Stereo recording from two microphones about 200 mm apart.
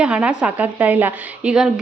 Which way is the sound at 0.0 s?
5° right (ahead or behind).